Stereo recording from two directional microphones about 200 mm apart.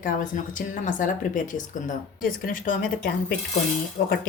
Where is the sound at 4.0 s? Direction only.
35° left (ahead or behind).